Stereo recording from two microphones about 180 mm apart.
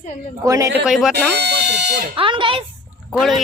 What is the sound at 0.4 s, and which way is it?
Speech, 20° right (ahead or behind).